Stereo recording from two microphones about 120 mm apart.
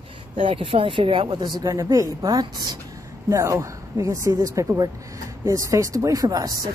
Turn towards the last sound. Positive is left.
turn(degrees=-30)  # may be behind; listen again after turning